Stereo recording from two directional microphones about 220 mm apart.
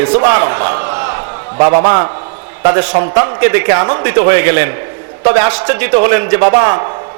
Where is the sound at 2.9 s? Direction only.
20° right (ahead or behind).